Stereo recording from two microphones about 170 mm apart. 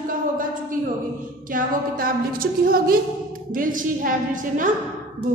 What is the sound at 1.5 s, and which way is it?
A woman's voice, 55° right (ahead or behind).